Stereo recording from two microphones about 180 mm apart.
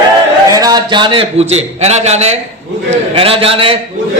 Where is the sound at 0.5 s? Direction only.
20° right (ahead or behind).